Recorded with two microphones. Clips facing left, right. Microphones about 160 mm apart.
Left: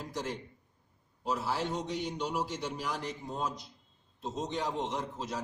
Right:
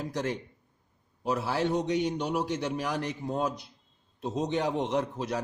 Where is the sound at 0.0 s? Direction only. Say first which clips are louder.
Right 6 dB; 65° right (ahead or behind).